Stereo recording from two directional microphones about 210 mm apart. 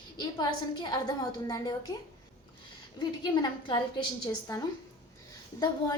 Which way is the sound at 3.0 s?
20° left (ahead or behind).